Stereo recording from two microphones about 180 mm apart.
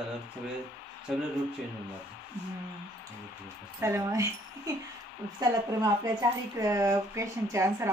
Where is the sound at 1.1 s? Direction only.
5° right (ahead or behind).